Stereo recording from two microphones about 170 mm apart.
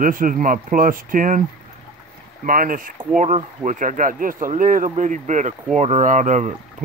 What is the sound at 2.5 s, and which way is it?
Speech, 55° right (ahead or behind).